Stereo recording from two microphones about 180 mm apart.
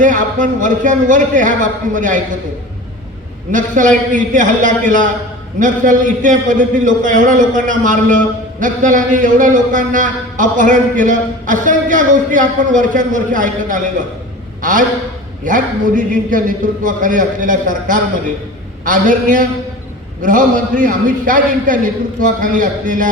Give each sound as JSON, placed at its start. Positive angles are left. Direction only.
{"t": 0.0, "sound": "a man's voice", "side_deg": -45}
{"t": 3.5, "sound": "a man's voice", "side_deg": -45}